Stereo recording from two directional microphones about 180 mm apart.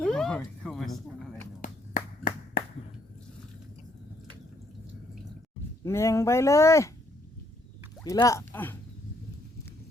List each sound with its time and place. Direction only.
0.0 s a sound: 5° left (ahead or behind)
1.6 s finger snapping: 50° left (ahead or behind)
5.8 s speech: 15° left (ahead or behind)
8.0 s speech: 20° left (ahead or behind)